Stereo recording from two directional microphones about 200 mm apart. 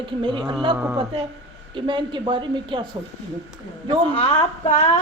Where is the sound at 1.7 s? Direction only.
25° right (ahead or behind).